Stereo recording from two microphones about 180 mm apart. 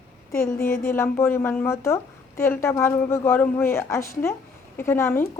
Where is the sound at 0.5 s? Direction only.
55° left (ahead or behind).